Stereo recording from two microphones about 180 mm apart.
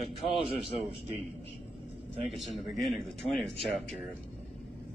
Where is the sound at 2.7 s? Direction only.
Centre (ahead or behind).